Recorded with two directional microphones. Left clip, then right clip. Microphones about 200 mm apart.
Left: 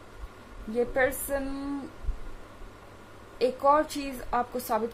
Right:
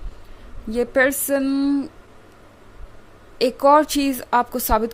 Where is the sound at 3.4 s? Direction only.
50° right (ahead or behind).